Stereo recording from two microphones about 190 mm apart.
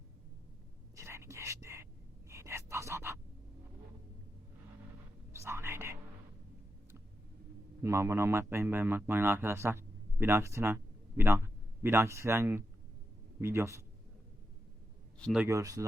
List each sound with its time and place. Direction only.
0.9 s whispering: 15° right (ahead or behind)
2.3 s a sound: 15° right (ahead or behind)
5.3 s whispering: 15° right (ahead or behind)
7.8 s speech: 15° right (ahead or behind)
15.2 s speech: centre (ahead or behind)
15.4 s speech: 15° right (ahead or behind)